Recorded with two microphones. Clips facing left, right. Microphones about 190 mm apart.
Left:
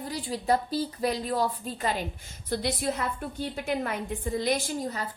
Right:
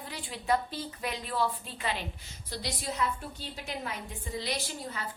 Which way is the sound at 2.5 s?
55° left (ahead or behind).